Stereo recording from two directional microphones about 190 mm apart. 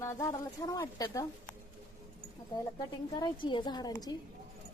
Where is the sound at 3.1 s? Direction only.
25° left (ahead or behind).